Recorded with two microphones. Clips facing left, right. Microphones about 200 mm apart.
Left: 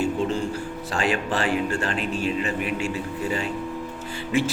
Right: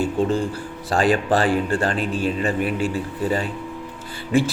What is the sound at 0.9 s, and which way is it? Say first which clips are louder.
Speech: right 7 dB; 35° right (ahead or behind).